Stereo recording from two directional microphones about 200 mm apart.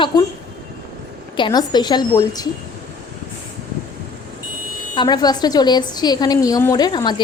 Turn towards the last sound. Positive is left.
turn(degrees=20)  # may be behind; listen again after turning